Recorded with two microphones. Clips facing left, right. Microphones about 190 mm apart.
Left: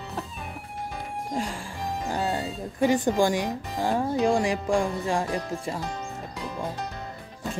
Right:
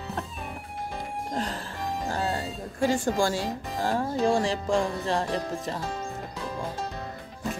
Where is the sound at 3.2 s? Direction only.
15° left (ahead or behind).